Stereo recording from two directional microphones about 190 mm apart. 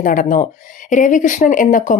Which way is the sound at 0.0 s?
45° left (ahead or behind).